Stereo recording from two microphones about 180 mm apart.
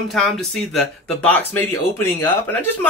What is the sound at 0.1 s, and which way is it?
Speech, centre (ahead or behind).